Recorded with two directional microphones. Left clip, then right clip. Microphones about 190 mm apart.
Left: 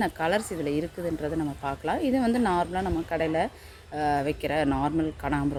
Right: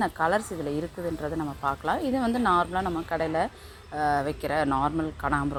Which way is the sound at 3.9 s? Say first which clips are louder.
Even; 15° left (ahead or behind).